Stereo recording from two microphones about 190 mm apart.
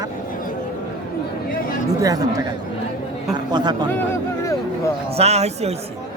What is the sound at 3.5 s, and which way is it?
Speech, 20° right (ahead or behind).